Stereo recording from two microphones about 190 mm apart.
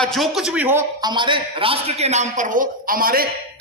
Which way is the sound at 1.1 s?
25° right (ahead or behind).